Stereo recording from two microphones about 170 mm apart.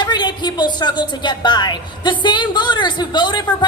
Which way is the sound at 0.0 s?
25° left (ahead or behind).